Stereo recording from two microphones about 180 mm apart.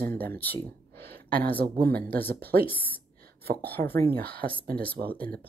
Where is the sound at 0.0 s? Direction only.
55° right (ahead or behind).